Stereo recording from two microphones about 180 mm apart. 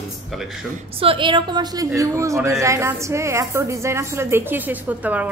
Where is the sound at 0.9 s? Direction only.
30° right (ahead or behind).